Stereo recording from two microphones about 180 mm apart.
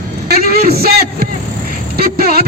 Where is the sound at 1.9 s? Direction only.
55° right (ahead or behind).